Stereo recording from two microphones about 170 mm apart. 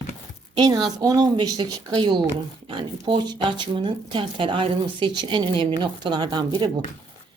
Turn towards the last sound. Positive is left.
turn(degrees=-25)  # may be behind; listen again after turning